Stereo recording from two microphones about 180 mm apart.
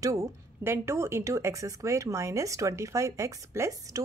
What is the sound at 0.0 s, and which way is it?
Speech, 15° right (ahead or behind).